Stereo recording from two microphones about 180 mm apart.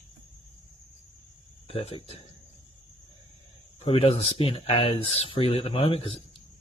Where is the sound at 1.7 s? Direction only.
35° left (ahead or behind).